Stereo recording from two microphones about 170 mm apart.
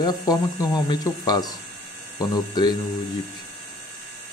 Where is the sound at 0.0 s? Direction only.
25° left (ahead or behind).